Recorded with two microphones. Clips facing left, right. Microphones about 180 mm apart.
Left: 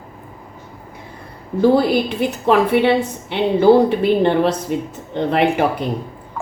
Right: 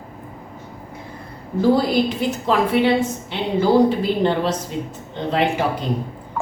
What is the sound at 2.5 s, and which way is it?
A woman's voice, 60° left (ahead or behind).